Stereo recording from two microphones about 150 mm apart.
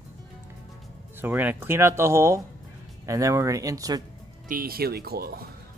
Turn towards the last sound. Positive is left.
turn(degrees=-90)